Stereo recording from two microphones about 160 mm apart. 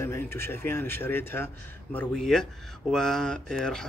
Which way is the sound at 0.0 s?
15° left (ahead or behind).